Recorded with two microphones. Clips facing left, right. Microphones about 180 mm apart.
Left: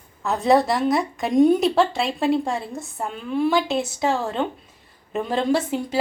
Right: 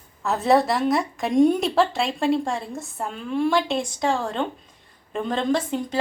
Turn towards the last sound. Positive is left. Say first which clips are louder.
# left 2 dB
turn(degrees=5)  # may be behind; listen again after turning